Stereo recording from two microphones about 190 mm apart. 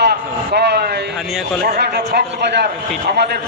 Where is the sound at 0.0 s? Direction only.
60° right (ahead or behind).